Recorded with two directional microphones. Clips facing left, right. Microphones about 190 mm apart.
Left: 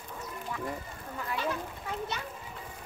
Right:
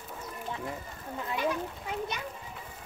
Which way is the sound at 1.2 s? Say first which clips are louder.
Right 2 dB; 15° right (ahead or behind).